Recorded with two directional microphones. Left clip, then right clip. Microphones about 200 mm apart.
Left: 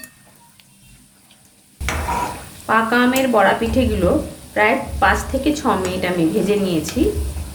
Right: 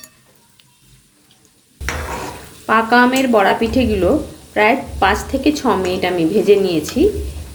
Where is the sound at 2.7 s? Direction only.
40° right (ahead or behind).